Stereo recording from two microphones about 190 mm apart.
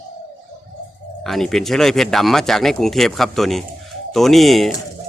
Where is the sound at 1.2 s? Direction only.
Centre (ahead or behind).